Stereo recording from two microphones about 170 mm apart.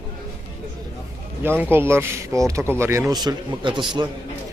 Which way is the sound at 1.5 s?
10° right (ahead or behind).